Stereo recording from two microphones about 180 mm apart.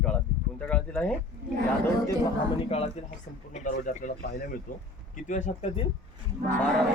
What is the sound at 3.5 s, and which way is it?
Speech, 45° left (ahead or behind).